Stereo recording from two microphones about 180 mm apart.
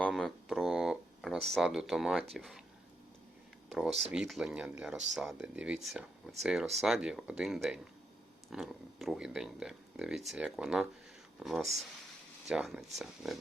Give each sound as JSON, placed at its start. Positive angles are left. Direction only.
{"t": 0.0, "sound": "a sound", "side_deg": 0}
{"t": 2.3, "sound": "speech", "side_deg": 0}
{"t": 3.7, "sound": "speech", "side_deg": -5}